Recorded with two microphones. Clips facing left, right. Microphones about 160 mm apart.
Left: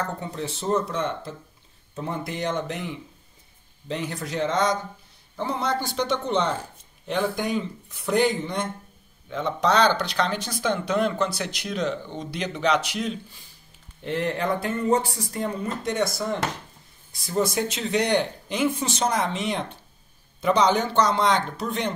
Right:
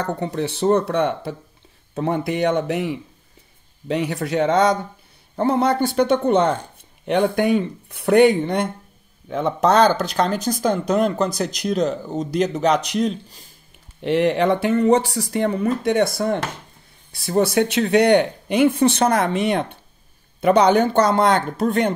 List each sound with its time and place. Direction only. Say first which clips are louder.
0.0 s speech: right 7 dB; 70° right (ahead or behind)
9.3 s speech: right 5 dB; 50° right (ahead or behind)
14.0 s speech: right 8 dB; 75° right (ahead or behind); by 21.9 s 55° right (ahead or behind)